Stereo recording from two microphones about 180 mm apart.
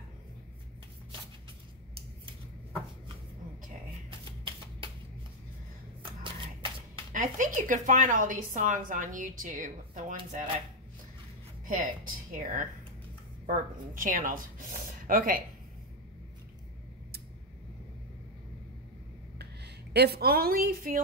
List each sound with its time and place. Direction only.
6.2 s shuffling cards: 30° right (ahead or behind)
7.1 s a woman's voice: 45° right (ahead or behind)
11.6 s a woman's voice: 50° right (ahead or behind)
19.3 s speech: 65° right (ahead or behind)